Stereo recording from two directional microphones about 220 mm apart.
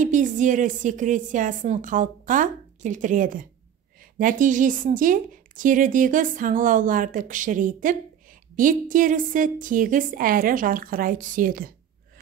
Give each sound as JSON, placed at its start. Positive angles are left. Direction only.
{"t": 0.0, "sound": "a woman's voice", "side_deg": -35}